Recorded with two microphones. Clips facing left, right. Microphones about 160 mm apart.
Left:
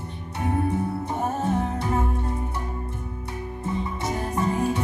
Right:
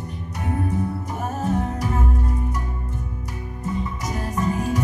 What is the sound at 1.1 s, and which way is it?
Music, 30° left (ahead or behind).